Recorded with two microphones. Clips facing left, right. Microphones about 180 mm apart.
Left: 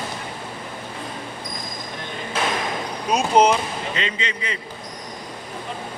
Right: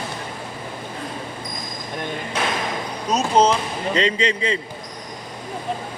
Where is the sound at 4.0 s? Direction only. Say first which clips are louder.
Right 7 dB; 30° right (ahead or behind).